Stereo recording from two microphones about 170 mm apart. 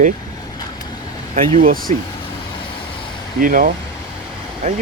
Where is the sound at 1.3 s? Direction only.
50° right (ahead or behind).